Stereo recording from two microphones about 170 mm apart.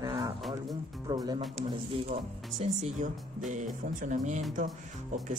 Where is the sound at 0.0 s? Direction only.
25° right (ahead or behind).